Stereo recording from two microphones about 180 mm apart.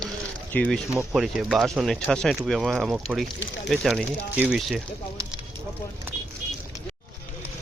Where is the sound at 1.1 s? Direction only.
Centre (ahead or behind).